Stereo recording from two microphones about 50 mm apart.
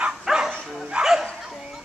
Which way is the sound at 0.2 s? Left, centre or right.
Centre.